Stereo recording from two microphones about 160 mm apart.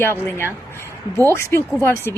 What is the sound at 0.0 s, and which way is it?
Speech, 15° left (ahead or behind).